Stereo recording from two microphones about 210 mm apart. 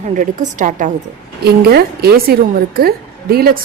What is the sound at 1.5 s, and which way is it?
A woman's voice, 50° right (ahead or behind).